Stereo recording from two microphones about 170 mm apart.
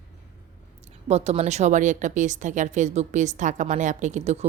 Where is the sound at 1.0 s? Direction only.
40° right (ahead or behind).